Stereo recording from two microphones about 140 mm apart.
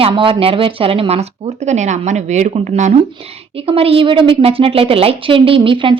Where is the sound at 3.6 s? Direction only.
45° right (ahead or behind).